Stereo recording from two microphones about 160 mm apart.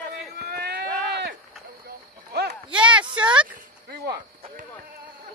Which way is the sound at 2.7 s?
5° right (ahead or behind).